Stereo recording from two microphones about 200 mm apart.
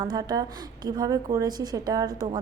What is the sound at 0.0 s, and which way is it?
A woman's voice, 20° right (ahead or behind).